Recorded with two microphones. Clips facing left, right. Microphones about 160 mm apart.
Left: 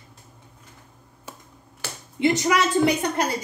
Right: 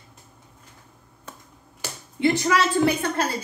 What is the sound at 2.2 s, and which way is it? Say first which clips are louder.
A woman's voice: even; 20° left (ahead or behind).